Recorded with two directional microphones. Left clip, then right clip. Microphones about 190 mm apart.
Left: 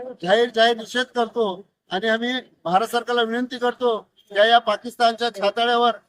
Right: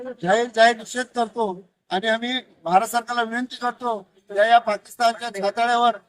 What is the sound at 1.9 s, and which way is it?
Speech, 25° left (ahead or behind).